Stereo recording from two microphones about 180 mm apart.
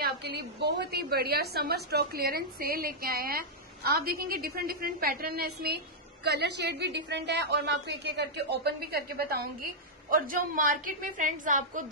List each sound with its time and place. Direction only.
0.0 s a woman's voice: 65° right (ahead or behind); by 11.8 s 45° right (ahead or behind)